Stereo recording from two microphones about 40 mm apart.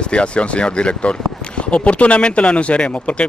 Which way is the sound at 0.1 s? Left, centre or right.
Left.